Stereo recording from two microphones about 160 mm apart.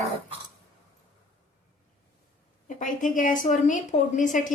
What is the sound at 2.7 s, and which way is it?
A woman's voice, 55° left (ahead or behind).